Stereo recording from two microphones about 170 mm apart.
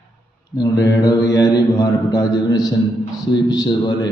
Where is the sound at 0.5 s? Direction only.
20° left (ahead or behind).